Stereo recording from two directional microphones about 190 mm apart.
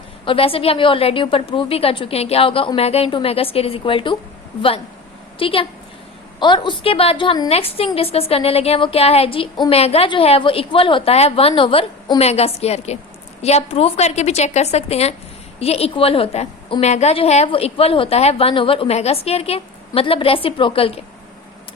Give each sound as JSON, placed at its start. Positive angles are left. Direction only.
{"t": 0.3, "sound": "a woman's voice", "side_deg": 30}
{"t": 5.4, "sound": "a woman's voice", "side_deg": 30}